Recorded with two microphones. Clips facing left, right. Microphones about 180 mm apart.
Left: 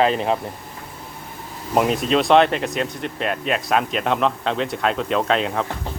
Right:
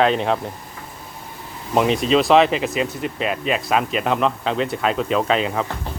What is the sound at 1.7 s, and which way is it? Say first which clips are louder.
Speech: right 1 dB; centre (ahead or behind).